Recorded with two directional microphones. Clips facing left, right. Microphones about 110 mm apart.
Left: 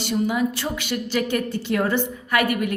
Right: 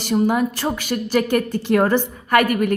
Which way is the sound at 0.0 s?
45° right (ahead or behind).